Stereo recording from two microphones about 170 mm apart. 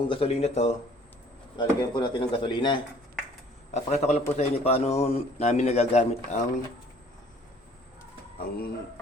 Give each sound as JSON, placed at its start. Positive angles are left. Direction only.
{"t": 0.0, "sound": "a man's voice", "side_deg": 30}
{"t": 1.5, "sound": "a man's voice", "side_deg": 25}
{"t": 3.8, "sound": "a man's voice", "side_deg": 40}
{"t": 8.4, "sound": "speech", "side_deg": 60}